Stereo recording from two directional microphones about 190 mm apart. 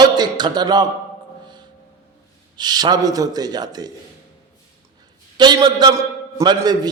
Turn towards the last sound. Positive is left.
turn(degrees=-20)  # may be behind; listen again after turning